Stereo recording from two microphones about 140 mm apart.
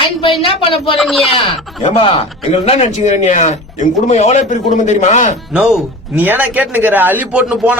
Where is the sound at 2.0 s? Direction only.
45° left (ahead or behind).